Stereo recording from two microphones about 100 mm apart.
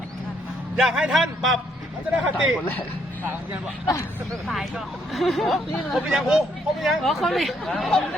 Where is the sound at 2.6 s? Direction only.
20° left (ahead or behind).